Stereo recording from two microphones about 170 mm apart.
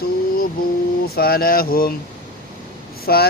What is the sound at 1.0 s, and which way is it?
Speech, 65° left (ahead or behind).